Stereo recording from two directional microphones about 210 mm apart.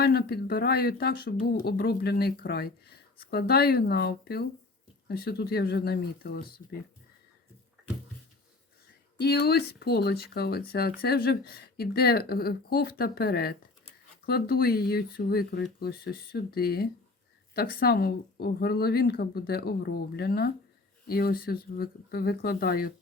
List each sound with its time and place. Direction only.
0.0 s speech: 50° left (ahead or behind)
9.1 s speech: 50° left (ahead or behind)